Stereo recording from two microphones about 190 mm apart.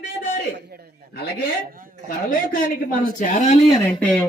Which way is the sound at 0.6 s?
55° right (ahead or behind).